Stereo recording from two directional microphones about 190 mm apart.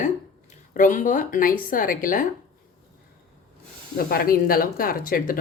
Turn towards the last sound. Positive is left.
turn(degrees=50)  # may be behind; listen again after turning